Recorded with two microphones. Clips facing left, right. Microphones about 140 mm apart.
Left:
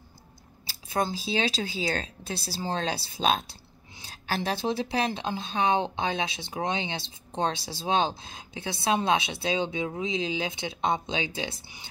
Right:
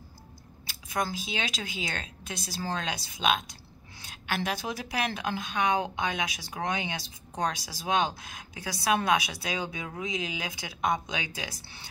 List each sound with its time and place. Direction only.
0.7 s a woman's voice: 30° left (ahead or behind)
11.6 s speech: 15° left (ahead or behind)